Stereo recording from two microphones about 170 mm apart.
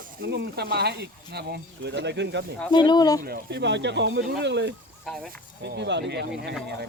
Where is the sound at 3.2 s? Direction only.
75° right (ahead or behind).